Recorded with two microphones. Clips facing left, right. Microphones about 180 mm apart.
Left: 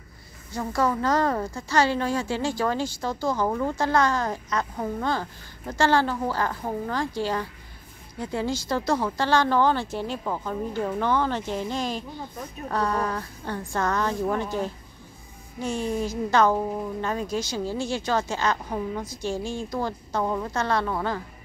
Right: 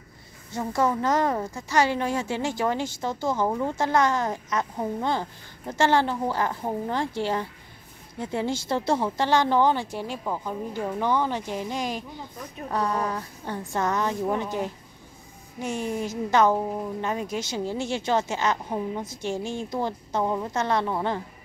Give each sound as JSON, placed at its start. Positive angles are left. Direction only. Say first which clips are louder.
{"t": 0.5, "sound": "a woman's voice", "louder": "even", "side_deg": -20}